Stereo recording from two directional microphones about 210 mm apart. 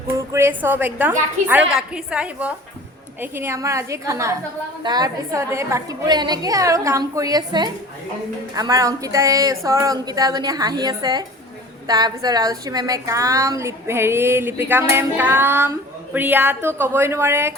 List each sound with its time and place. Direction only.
0.3 s a woman's voice: 10° right (ahead or behind)